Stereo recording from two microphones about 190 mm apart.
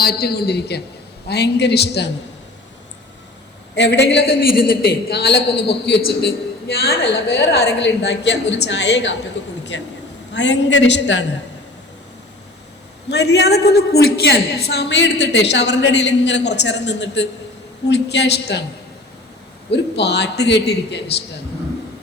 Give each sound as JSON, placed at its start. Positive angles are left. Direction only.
{"t": 0.0, "sound": "a man's voice", "side_deg": 55}
{"t": 3.8, "sound": "a man's voice", "side_deg": 65}
{"t": 9.7, "sound": "a man's voice", "side_deg": 80}
{"t": 10.3, "sound": "a woman's voice", "side_deg": 70}
{"t": 13.1, "sound": "a man's voice", "side_deg": 60}
{"t": 19.7, "sound": "a man's voice", "side_deg": 65}